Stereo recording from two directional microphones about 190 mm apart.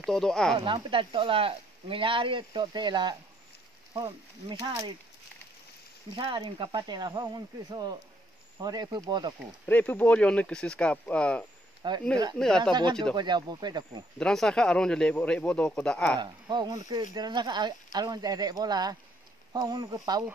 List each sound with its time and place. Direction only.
0.0 s speech: centre (ahead or behind)
0.6 s speech: 25° right (ahead or behind)
6.1 s speech: 25° right (ahead or behind)
9.7 s speech: 10° left (ahead or behind)
11.8 s speech: 20° right (ahead or behind)
12.4 s speech: 5° left (ahead or behind)
13.1 s speech: 25° right (ahead or behind)
14.1 s speech: 5° left (ahead or behind)
16.2 s speech: 25° right (ahead or behind)